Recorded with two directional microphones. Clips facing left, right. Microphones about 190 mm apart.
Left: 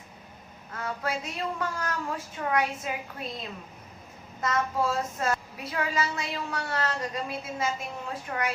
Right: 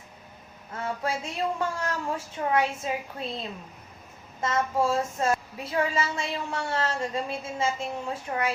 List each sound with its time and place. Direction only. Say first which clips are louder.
0.7 s a woman's voice: right 2 dB; 25° right (ahead or behind)
4.4 s a woman's voice: right 2 dB; 25° right (ahead or behind)